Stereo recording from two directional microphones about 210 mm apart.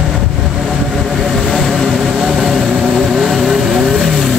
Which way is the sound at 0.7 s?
Centre (ahead or behind).